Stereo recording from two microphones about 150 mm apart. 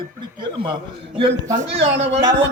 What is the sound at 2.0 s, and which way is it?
Speech, 45° right (ahead or behind).